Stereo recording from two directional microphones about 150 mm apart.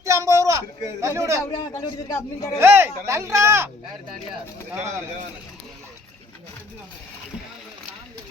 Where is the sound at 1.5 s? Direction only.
25° left (ahead or behind).